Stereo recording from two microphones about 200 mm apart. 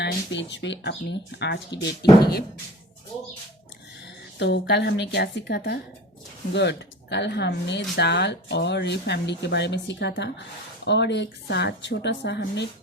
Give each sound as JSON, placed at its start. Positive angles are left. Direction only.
{"t": 0.0, "sound": "speech", "side_deg": 60}
{"t": 4.4, "sound": "speech", "side_deg": 60}